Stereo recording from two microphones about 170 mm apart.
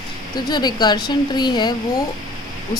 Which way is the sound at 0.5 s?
25° left (ahead or behind).